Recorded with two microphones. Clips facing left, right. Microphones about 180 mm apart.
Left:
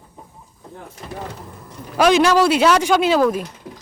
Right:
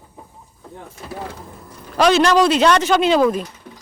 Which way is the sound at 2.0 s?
10° left (ahead or behind).